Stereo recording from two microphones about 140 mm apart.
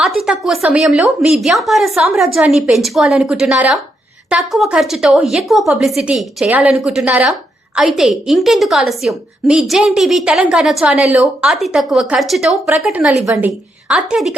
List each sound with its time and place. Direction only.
0.0 s a woman's voice: 5° right (ahead or behind)
13.2 s a woman's voice: 20° right (ahead or behind)
13.8 s a woman's voice: 5° right (ahead or behind)